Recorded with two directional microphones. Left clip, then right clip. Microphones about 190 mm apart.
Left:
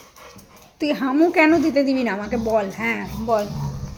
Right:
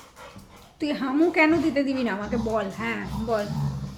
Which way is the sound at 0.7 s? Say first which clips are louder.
Left 5 dB; 25° left (ahead or behind).